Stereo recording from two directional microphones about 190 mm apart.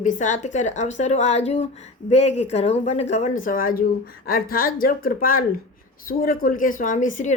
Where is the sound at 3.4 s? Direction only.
45° left (ahead or behind).